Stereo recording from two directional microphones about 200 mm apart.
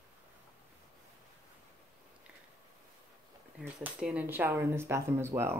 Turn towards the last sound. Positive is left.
turn(degrees=-10)  # may be behind; listen again after turning